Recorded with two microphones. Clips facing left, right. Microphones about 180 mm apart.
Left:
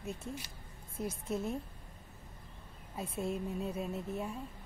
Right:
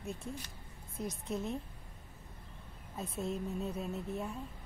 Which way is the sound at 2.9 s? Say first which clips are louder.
Left 1 dB; 10° left (ahead or behind).